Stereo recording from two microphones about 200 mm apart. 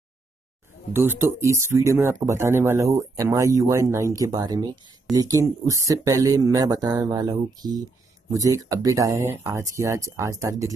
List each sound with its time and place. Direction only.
0.9 s speech: 10° right (ahead or behind)